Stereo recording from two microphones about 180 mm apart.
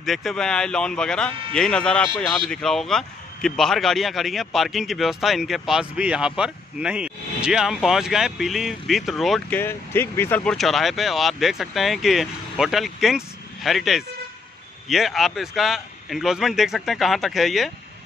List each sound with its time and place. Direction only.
0.0 s speech: centre (ahead or behind)
9.6 s speech: 15° left (ahead or behind)